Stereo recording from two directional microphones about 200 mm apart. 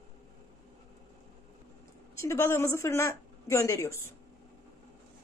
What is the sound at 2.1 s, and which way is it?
A woman's voice, 15° left (ahead or behind).